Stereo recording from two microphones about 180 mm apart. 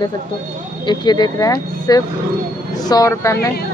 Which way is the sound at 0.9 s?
25° left (ahead or behind).